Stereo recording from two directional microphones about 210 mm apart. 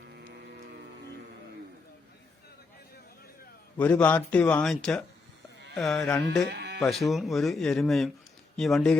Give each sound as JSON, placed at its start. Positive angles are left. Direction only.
{"t": 0.1, "sound": "vehicle", "side_deg": -50}
{"t": 3.8, "sound": "a man's voice", "side_deg": 5}
{"t": 6.5, "sound": "sheep", "side_deg": -50}
{"t": 6.7, "sound": "speech", "side_deg": 0}